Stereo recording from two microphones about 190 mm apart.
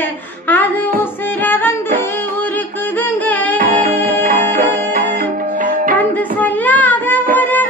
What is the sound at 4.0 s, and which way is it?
Music, 40° right (ahead or behind).